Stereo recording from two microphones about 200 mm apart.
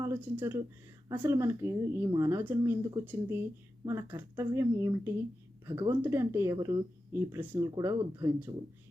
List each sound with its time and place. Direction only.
0.0 s speech: 10° right (ahead or behind)